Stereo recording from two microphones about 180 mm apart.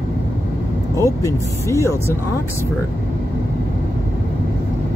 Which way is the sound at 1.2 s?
15° left (ahead or behind).